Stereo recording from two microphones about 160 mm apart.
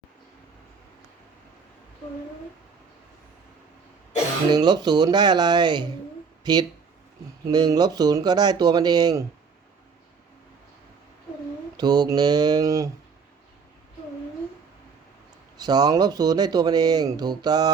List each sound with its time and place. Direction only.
4.5 s speech: 25° right (ahead or behind)
11.8 s speech: 25° right (ahead or behind)
15.5 s speech: 25° right (ahead or behind)